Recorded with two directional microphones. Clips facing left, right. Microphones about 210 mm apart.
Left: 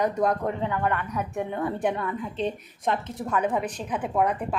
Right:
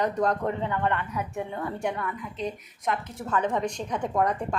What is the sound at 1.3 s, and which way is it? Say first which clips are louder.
A woman's voice: left 4 dB; 20° left (ahead or behind).